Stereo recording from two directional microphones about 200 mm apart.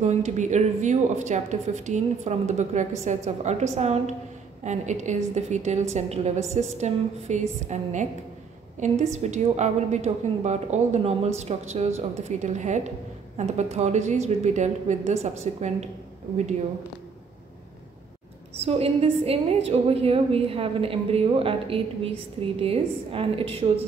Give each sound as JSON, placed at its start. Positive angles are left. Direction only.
{"t": 0.0, "sound": "a woman's voice", "side_deg": -35}
{"t": 18.6, "sound": "a woman's voice", "side_deg": -30}